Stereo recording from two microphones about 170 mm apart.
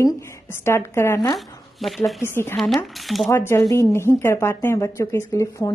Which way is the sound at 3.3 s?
15° left (ahead or behind).